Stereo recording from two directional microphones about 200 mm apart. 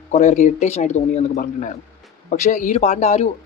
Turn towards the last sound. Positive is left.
turn(degrees=35)  # may be behind; listen again after turning